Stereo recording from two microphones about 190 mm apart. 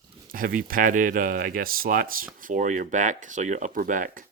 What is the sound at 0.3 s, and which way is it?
Speech, 50° right (ahead or behind).